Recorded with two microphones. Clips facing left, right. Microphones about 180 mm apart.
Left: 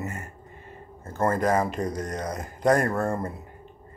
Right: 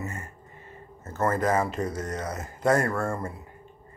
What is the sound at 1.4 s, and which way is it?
Speech, 15° left (ahead or behind).